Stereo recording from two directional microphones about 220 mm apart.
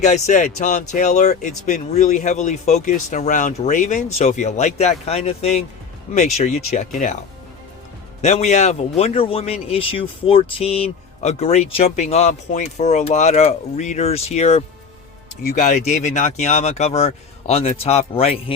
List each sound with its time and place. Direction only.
0.0 s speech: 30° left (ahead or behind)
8.2 s speech: 30° left (ahead or behind)